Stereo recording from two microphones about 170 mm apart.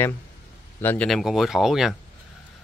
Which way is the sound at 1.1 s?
Centre (ahead or behind).